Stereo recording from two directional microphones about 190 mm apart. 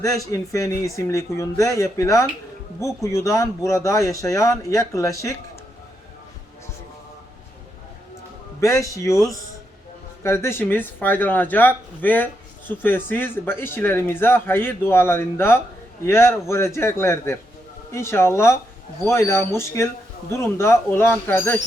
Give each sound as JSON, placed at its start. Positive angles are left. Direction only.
{"t": 0.0, "sound": "speech", "side_deg": 15}
{"t": 8.6, "sound": "speech", "side_deg": 15}
{"t": 10.2, "sound": "speech", "side_deg": 15}